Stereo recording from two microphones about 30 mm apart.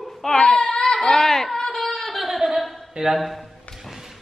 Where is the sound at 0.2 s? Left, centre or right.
Left.